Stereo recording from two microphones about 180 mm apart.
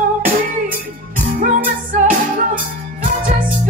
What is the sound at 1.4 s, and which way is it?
Music, 50° right (ahead or behind).